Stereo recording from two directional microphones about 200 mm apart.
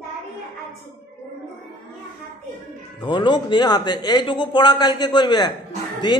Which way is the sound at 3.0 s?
25° left (ahead or behind).